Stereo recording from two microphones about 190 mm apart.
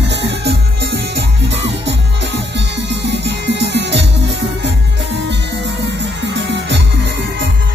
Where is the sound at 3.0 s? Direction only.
65° right (ahead or behind).